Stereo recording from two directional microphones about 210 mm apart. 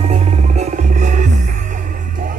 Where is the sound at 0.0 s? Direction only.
30° right (ahead or behind).